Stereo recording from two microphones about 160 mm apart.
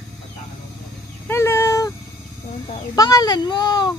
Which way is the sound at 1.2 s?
15° left (ahead or behind).